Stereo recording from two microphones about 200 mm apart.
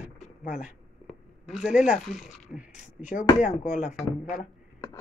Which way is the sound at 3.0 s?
40° left (ahead or behind).